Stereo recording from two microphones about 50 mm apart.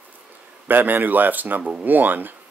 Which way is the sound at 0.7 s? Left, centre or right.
Right.